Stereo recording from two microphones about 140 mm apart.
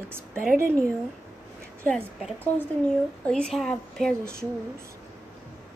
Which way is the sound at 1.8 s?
5° left (ahead or behind).